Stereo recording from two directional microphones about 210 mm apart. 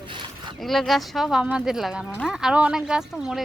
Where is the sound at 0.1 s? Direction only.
20° right (ahead or behind).